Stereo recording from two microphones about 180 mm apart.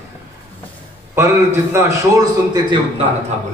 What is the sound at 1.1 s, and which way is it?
Speech, 15° right (ahead or behind).